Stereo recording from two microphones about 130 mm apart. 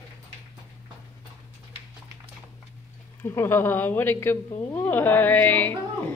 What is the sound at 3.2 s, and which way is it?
A woman's voice, 20° left (ahead or behind).